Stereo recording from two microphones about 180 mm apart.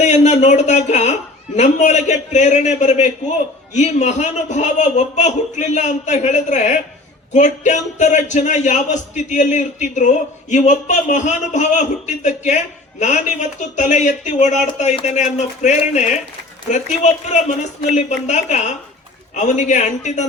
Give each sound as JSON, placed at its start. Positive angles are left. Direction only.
{"t": 0.0, "sound": "speech", "side_deg": 40}